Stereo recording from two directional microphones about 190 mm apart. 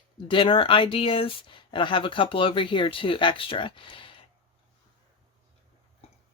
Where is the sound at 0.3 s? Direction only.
25° left (ahead or behind).